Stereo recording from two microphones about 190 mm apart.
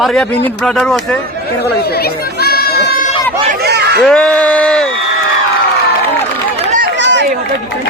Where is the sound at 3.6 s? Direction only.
60° right (ahead or behind).